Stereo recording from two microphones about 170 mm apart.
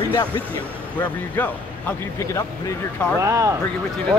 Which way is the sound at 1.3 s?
10° left (ahead or behind).